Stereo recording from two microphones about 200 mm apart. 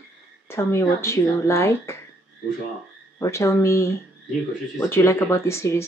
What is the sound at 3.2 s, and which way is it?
Speech, 15° left (ahead or behind).